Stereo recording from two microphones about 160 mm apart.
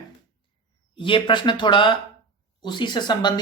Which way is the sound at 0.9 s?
30° left (ahead or behind).